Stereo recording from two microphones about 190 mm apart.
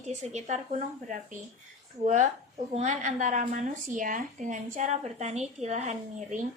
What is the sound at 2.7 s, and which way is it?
A woman's voice, 40° right (ahead or behind).